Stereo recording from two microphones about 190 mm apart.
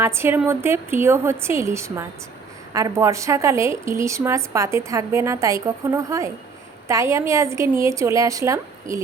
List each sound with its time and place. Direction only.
0.0 s a woman's voice: 15° right (ahead or behind)